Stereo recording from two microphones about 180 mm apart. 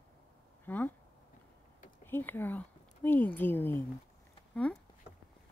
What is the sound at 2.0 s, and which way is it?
Speech, 10° left (ahead or behind).